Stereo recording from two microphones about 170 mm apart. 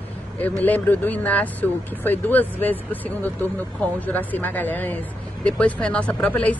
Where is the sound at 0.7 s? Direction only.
10° left (ahead or behind).